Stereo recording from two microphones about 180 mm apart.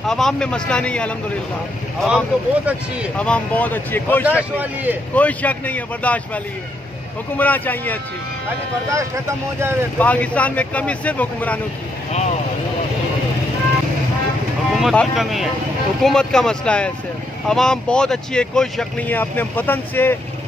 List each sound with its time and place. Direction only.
0.0 s speech: centre (ahead or behind)
3.2 s speech: 5° left (ahead or behind)
4.4 s a man's voice: 10° right (ahead or behind)
5.1 s speech: 10° left (ahead or behind)
9.6 s a man's voice: 15° right (ahead or behind)
9.9 s speech: 10° left (ahead or behind)
12.1 s speech: 40° left (ahead or behind)
14.8 s speech: centre (ahead or behind)